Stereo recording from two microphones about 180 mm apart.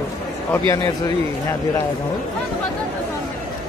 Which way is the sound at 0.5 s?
15° left (ahead or behind).